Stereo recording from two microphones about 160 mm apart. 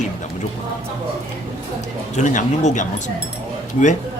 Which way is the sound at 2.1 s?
50° left (ahead or behind).